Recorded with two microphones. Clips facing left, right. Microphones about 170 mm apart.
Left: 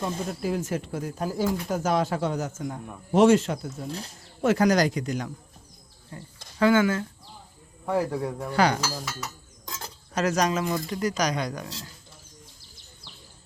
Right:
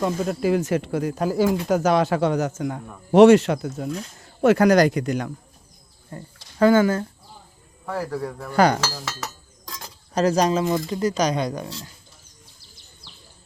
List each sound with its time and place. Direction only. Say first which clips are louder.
0.0 s speech: right 7 dB; 85° right
3.9 s speech: right 4 dB; 65° right (ahead or behind)
6.1 s speech: right 4 dB; 50° right (ahead or behind)
7.9 s speech: left 2 dB; 20° left (ahead or behind)
8.5 s speech: right 5 dB; 45° right (ahead or behind)
8.8 s speech: right 2 dB; 90° right
10.2 s speech: right 5 dB; 30° right (ahead or behind)